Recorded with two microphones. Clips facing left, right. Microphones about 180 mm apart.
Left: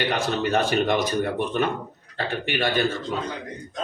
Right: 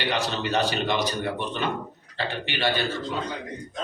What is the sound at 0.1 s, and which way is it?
Speech, 50° left (ahead or behind).